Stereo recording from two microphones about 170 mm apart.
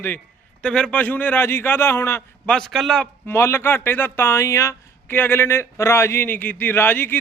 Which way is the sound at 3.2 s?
15° left (ahead or behind).